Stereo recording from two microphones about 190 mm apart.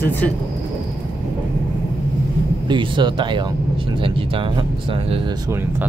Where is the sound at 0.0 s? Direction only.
10° left (ahead or behind).